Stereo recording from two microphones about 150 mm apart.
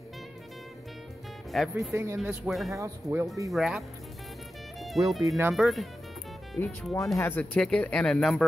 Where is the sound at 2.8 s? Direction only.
20° right (ahead or behind).